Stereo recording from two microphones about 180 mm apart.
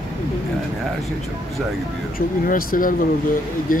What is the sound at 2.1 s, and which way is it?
Speech, 50° left (ahead or behind).